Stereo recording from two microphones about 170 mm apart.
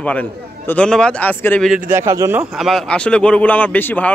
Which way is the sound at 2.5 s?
Centre (ahead or behind).